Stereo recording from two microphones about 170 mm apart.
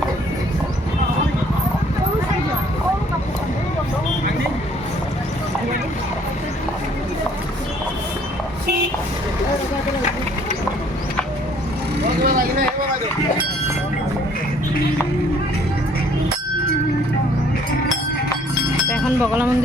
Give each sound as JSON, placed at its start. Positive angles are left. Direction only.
{"t": 12.2, "sound": "vehicle", "side_deg": -60}
{"t": 19.2, "sound": "wind chime", "side_deg": -10}